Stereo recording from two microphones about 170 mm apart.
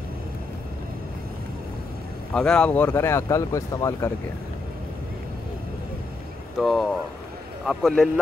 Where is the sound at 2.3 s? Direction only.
5° left (ahead or behind).